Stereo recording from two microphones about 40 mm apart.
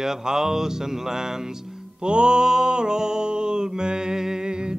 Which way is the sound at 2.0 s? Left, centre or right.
Right.